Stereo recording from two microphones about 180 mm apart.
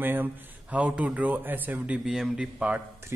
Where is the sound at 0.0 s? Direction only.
10° right (ahead or behind).